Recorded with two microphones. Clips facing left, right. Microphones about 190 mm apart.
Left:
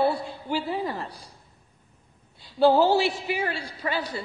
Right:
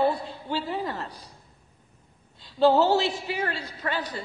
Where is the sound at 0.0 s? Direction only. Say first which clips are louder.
Even; 10° left (ahead or behind).